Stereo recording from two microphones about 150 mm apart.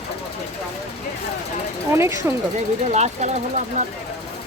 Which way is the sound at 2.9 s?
50° right (ahead or behind).